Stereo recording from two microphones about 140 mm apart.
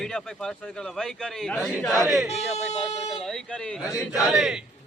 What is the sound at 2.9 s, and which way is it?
Speech, 50° left (ahead or behind).